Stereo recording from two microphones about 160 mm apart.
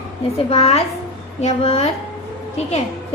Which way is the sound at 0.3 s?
40° left (ahead or behind).